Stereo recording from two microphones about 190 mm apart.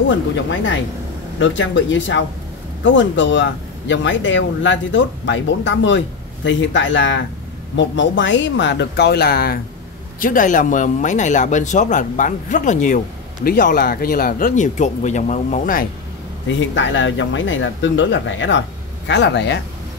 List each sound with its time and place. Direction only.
1.4 s speech: 75° left (ahead or behind); by 15.9 s 45° left (ahead or behind)
16.4 s speech: 80° left
19.0 s speech: 65° left (ahead or behind)